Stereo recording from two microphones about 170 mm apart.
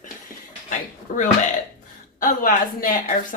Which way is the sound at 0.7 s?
50° left (ahead or behind).